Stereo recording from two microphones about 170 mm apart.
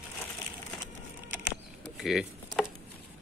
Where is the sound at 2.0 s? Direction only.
Centre (ahead or behind).